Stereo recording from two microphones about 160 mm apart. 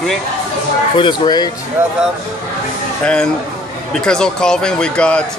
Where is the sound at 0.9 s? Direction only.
30° left (ahead or behind).